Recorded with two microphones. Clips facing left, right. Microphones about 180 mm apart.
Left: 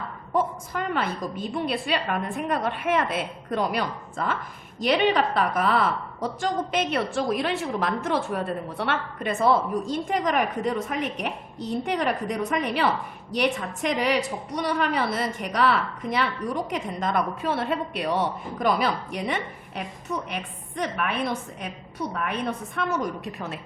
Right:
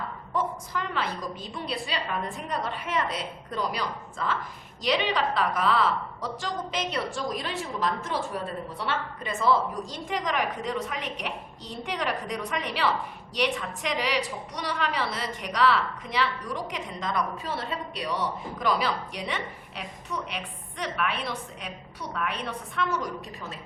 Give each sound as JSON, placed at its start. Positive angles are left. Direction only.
{"t": 0.3, "sound": "a woman's voice", "side_deg": 55}